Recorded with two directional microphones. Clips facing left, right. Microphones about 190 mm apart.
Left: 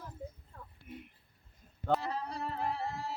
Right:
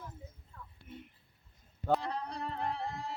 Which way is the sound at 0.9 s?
10° left (ahead or behind).